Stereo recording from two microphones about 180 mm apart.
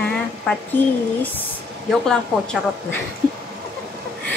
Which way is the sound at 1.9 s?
5° left (ahead or behind).